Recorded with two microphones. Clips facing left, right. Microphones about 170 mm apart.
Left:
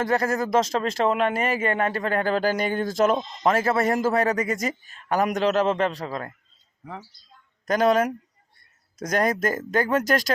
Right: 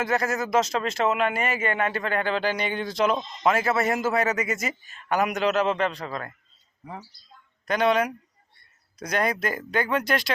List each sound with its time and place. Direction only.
0.1 s speech: 35° left (ahead or behind)
7.6 s speech: 40° left (ahead or behind)